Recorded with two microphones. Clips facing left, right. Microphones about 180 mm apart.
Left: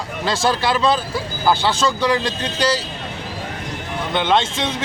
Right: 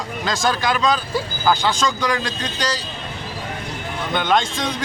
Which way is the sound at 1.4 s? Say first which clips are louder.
Left 2 dB; 5° left (ahead or behind).